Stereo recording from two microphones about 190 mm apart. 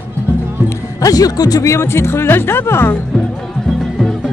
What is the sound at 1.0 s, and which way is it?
Speech, 20° left (ahead or behind).